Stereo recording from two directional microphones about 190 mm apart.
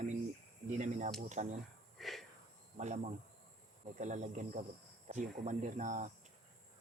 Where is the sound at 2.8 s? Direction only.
35° right (ahead or behind).